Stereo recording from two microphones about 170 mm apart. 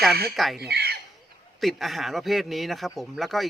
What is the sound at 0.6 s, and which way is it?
Chicken, 70° right (ahead or behind).